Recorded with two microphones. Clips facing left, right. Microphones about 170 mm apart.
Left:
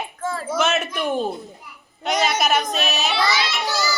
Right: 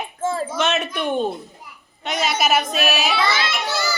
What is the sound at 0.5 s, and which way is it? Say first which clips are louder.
A woman's voice: left 1 dB; centre (ahead or behind).